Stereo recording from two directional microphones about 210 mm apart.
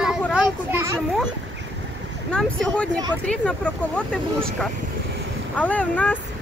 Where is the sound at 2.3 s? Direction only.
5° left (ahead or behind).